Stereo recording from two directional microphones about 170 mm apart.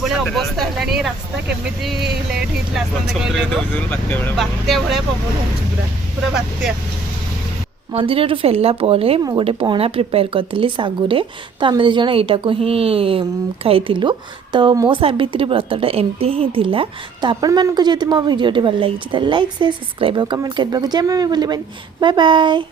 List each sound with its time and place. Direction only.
0.3 s speech: centre (ahead or behind)
7.9 s a woman's voice: 35° right (ahead or behind)